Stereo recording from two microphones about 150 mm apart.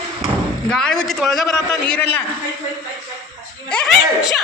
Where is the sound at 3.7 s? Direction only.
Centre (ahead or behind).